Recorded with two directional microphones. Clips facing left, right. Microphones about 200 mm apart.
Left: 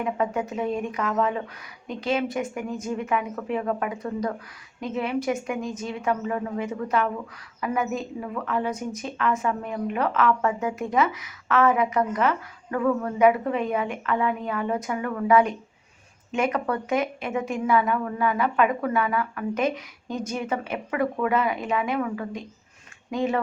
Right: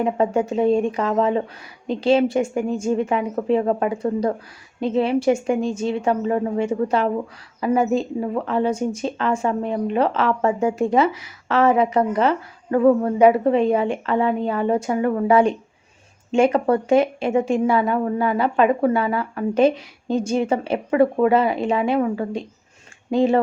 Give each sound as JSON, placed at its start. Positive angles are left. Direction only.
{"t": 0.0, "sound": "a woman's voice", "side_deg": -30}